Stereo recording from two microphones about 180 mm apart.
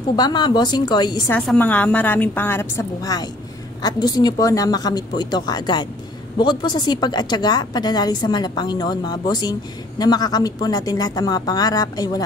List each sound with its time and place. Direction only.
0.1 s a woman's voice: 25° left (ahead or behind)
1.3 s a woman's voice: 5° left (ahead or behind)